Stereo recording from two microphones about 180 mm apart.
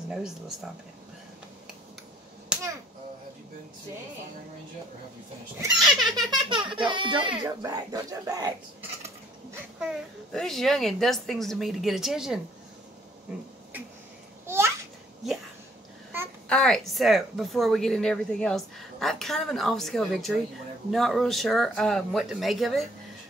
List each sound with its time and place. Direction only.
0.1 s a woman's voice: 5° right (ahead or behind)
2.5 s finger snapping: 5° right (ahead or behind)
5.9 s a woman's voice: centre (ahead or behind)
6.3 s speech: 25° right (ahead or behind)
9.8 s a woman's voice: centre (ahead or behind)
14.4 s babbling: 15° right (ahead or behind)
16.4 s a woman's voice: 5° left (ahead or behind)